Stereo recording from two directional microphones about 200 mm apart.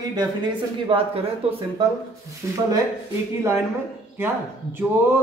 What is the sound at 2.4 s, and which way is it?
Speech, 15° right (ahead or behind).